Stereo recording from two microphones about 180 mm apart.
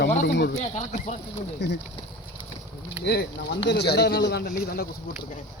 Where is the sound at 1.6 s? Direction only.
75° left (ahead or behind).